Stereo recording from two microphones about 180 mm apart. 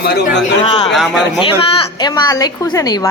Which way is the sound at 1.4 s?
25° left (ahead or behind).